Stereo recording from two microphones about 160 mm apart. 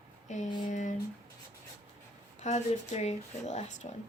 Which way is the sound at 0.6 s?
50° left (ahead or behind).